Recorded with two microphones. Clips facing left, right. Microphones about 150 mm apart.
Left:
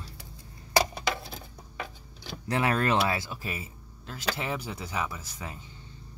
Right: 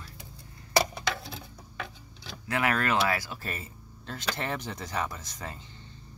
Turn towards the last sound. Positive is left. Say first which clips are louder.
# even
turn(degrees=10)  # may be behind; listen again after turning